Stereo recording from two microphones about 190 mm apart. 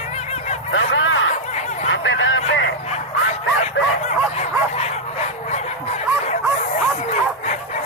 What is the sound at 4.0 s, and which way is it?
Bow-wow, 35° left (ahead or behind).